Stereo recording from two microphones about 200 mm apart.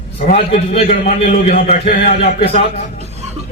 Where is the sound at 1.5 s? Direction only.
45° left (ahead or behind).